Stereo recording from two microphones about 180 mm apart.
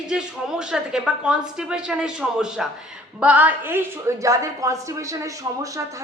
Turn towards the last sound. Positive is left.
turn(degrees=-20)  # may be behind; listen again after turning